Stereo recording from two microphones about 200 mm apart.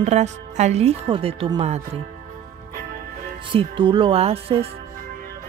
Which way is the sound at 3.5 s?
25° right (ahead or behind).